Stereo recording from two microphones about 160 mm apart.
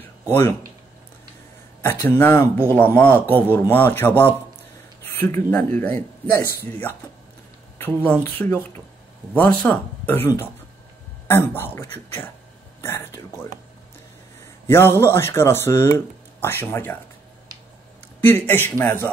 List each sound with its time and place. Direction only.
0.3 s speech: 15° left (ahead or behind)
1.8 s speech: 15° left (ahead or behind)
14.7 s speech: 15° left (ahead or behind)
18.2 s speech: 15° left (ahead or behind)